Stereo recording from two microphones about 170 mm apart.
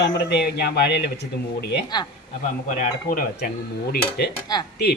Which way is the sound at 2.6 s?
50° left (ahead or behind).